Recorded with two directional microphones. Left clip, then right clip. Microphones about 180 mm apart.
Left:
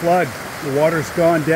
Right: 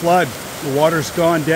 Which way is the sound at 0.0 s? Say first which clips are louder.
Right 1 dB; 15° right (ahead or behind).